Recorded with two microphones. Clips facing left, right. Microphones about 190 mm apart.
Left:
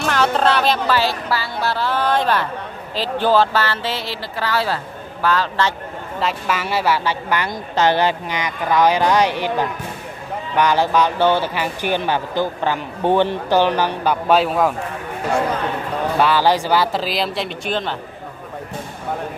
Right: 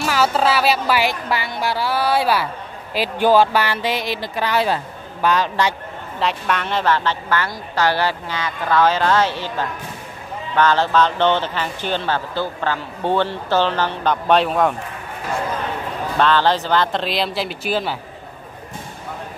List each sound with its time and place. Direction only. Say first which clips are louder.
0.0 s speech: left 1 dB; 5° right (ahead or behind)
6.1 s a man's voice: even; centre (ahead or behind)
16.2 s speech: even; 10° left (ahead or behind); by 17.9 s 5° right (ahead or behind)